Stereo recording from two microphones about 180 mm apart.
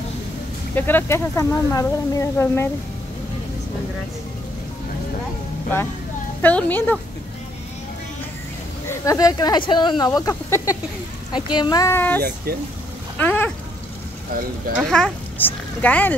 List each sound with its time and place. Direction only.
0.7 s speech: 10° left (ahead or behind)
6.4 s speech: 10° left (ahead or behind)
8.8 s speech: 15° left (ahead or behind)
12.2 s speech: 55° right (ahead or behind)
13.2 s a sound: 10° left (ahead or behind)
14.8 s speech: 5° left (ahead or behind)